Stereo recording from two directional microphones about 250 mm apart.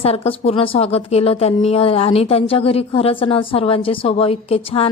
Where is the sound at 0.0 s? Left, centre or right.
Left.